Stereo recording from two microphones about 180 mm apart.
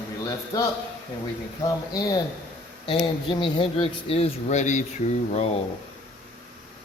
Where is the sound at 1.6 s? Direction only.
20° left (ahead or behind); by 4.9 s 40° left (ahead or behind).